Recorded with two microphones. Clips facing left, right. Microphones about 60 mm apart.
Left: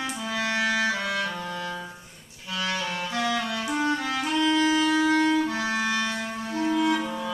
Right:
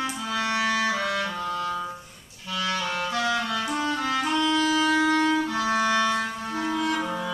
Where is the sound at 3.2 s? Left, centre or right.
Centre.